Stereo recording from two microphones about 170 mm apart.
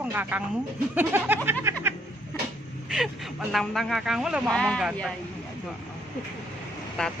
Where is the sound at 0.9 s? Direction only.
10° right (ahead or behind).